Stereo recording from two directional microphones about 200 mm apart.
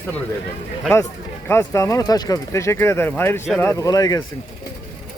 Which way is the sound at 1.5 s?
15° left (ahead or behind).